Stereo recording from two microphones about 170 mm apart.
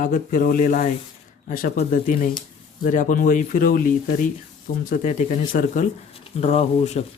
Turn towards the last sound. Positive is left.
turn(degrees=40)  # may be behind; listen again after turning